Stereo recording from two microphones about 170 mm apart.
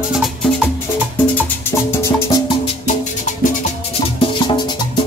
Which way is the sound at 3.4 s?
50° left (ahead or behind).